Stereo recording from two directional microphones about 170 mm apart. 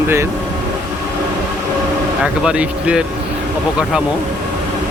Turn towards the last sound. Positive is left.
turn(degrees=-5)  # may be behind; listen again after turning